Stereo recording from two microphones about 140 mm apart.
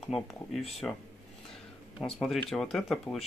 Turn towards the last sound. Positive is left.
turn(degrees=0)  # may be behind; listen again after turning